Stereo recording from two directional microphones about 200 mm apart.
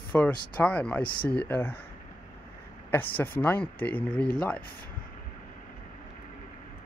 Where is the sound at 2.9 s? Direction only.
10° left (ahead or behind).